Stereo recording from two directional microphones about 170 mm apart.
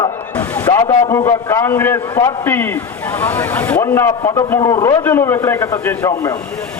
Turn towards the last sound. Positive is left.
turn(degrees=15)  # may be behind; listen again after turning